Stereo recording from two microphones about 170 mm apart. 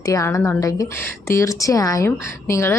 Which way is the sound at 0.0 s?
20° left (ahead or behind).